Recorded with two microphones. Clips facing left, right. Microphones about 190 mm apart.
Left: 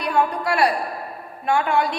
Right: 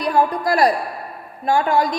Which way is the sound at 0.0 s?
35° right (ahead or behind).